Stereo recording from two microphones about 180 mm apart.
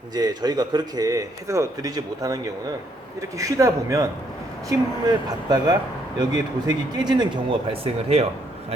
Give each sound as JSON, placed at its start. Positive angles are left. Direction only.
{"t": 0.1, "sound": "a man's voice", "side_deg": -20}